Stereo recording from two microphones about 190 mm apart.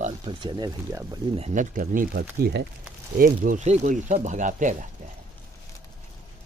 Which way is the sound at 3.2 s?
45° right (ahead or behind).